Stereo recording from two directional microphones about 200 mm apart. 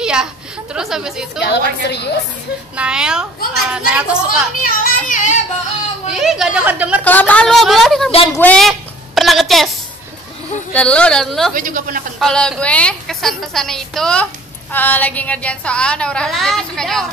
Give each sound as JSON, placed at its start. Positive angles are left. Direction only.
{"t": 0.0, "sound": "a sound", "side_deg": -5}
{"t": 0.7, "sound": "a woman's voice", "side_deg": 0}
{"t": 1.4, "sound": "a woman's voice", "side_deg": 55}
{"t": 2.7, "sound": "a woman's voice", "side_deg": -5}
{"t": 4.6, "sound": "a child's voice", "side_deg": 40}
{"t": 6.0, "sound": "a woman's voice", "side_deg": -5}
{"t": 7.1, "sound": "a woman's voice", "side_deg": 10}
{"t": 8.3, "sound": "a sound", "side_deg": 5}
{"t": 10.7, "sound": "a woman's voice", "side_deg": 5}
{"t": 11.5, "sound": "a woman's voice", "side_deg": -45}
{"t": 12.2, "sound": "a woman's voice", "side_deg": 0}